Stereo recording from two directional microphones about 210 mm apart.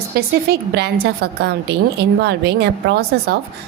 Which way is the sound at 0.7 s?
50° right (ahead or behind).